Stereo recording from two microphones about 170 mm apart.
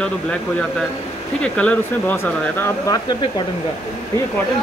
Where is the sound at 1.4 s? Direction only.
5° left (ahead or behind).